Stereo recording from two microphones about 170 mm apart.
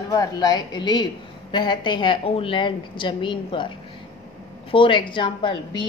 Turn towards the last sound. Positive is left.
turn(degrees=30)  # may be behind; listen again after turning